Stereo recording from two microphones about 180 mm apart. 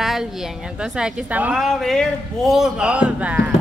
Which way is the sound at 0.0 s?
Centre (ahead or behind).